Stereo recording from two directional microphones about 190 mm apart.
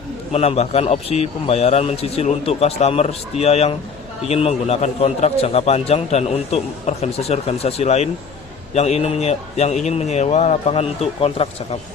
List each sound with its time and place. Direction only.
0.3 s a man's voice: 35° left (ahead or behind)